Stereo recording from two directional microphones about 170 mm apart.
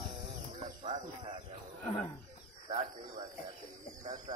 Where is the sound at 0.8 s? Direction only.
35° right (ahead or behind).